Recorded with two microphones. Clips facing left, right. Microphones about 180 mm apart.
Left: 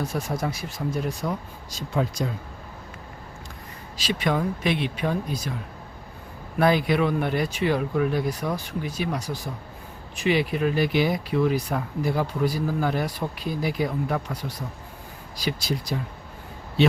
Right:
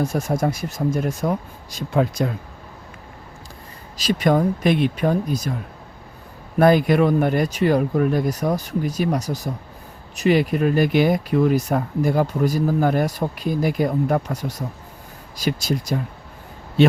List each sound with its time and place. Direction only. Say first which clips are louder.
0.0 s speech: right 6 dB; 45° right (ahead or behind)
3.9 s speech: right 7 dB; 45° right (ahead or behind)
6.6 s speech: right 6 dB; 45° right (ahead or behind)